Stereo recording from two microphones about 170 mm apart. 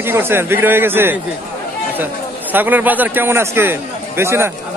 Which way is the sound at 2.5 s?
10° right (ahead or behind).